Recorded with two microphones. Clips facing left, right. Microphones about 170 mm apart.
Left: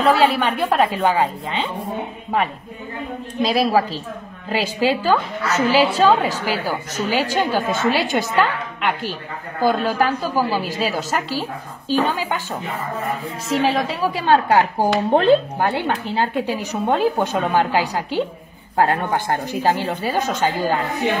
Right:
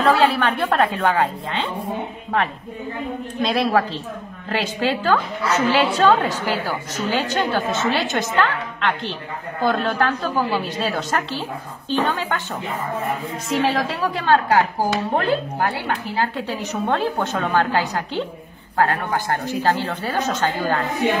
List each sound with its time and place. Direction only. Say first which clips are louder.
0.0 s a woman's voice: left 1 dB; 5° left (ahead or behind)
3.4 s a woman's voice: left 2 dB; 5° left (ahead or behind)
13.5 s a woman's voice: left 1 dB; centre (ahead or behind)
14.2 s a woman's voice: left 1 dB; 20° left (ahead or behind)